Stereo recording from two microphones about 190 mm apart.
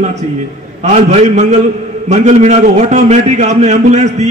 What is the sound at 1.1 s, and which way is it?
A man's voice, 35° right (ahead or behind).